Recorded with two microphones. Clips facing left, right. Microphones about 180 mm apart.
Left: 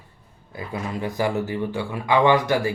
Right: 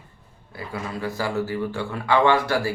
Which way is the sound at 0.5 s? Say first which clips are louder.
Left 2 dB; 20° left (ahead or behind).